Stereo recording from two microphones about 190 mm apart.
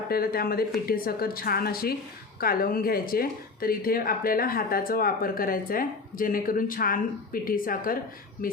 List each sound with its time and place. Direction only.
0.1 s a woman's voice: 50° left (ahead or behind)